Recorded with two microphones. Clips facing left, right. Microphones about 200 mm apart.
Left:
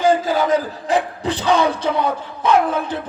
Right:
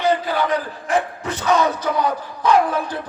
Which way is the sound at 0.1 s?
45° left (ahead or behind).